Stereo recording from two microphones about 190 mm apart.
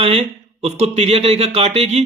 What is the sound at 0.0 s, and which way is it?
Speech, 35° right (ahead or behind).